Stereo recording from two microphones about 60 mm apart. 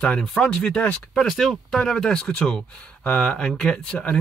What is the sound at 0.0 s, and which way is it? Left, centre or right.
Speech, centre.